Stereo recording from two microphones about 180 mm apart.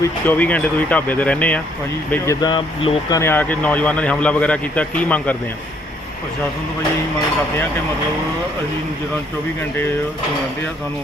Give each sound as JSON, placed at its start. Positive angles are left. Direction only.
{"t": 0.0, "sound": "speech", "side_deg": 10}
{"t": 3.2, "sound": "speech", "side_deg": 10}